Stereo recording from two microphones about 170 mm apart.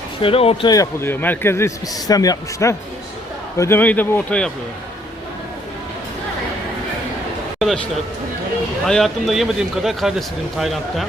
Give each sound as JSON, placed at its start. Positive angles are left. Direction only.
{"t": 0.2, "sound": "speech", "side_deg": 35}
{"t": 0.7, "sound": "a man's voice", "side_deg": 15}
{"t": 8.9, "sound": "a man's voice", "side_deg": 0}